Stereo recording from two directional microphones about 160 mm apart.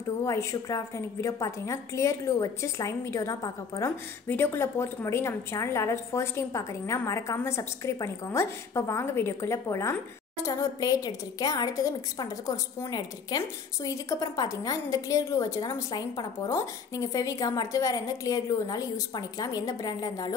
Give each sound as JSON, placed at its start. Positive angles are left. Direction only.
{"t": 0.2, "sound": "a woman's voice", "side_deg": 20}